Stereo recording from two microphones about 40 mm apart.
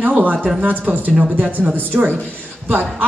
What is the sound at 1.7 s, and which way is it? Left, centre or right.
Speech, right.